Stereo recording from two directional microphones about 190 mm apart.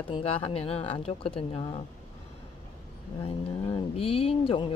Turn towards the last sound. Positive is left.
turn(degrees=30)  # may be behind; listen again after turning